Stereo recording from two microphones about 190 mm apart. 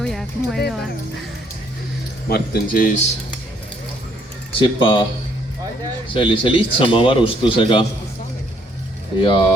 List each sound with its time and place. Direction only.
0.0 s music: centre (ahead or behind)
2.3 s speech: 45° left (ahead or behind)
4.6 s a man's voice: 25° left (ahead or behind)
6.1 s a man's voice: 25° left (ahead or behind)
9.1 s a man's voice: 25° left (ahead or behind)